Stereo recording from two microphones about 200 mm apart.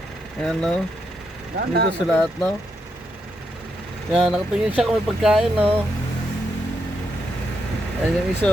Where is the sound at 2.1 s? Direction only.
5° left (ahead or behind).